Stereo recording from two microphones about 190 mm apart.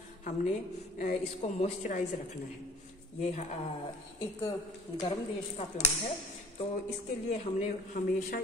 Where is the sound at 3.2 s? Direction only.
35° left (ahead or behind).